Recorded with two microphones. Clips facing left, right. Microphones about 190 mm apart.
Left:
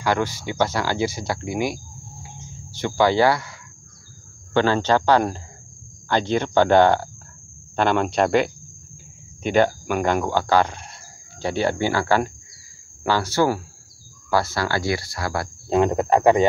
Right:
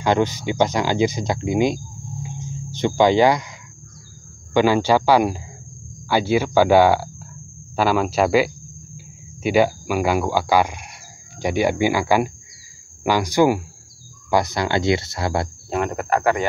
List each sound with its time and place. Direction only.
0.0 s speech: 20° right (ahead or behind)
2.2 s music: 20° right (ahead or behind)
4.6 s speech: 10° right (ahead or behind)
15.7 s insect: 20° left (ahead or behind)